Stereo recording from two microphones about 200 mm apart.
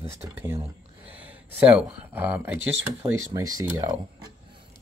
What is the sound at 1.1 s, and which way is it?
Speech, 10° right (ahead or behind).